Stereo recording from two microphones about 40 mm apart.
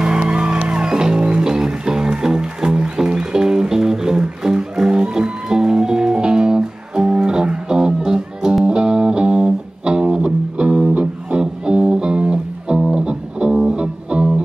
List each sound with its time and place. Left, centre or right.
0.2 s music: right